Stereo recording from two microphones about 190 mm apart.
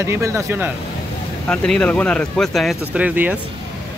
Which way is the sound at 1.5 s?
5° left (ahead or behind).